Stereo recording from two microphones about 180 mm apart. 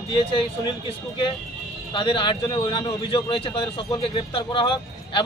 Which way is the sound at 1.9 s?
25° left (ahead or behind).